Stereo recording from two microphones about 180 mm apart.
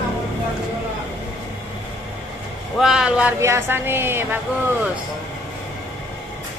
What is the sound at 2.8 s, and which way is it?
Speech, 5° right (ahead or behind).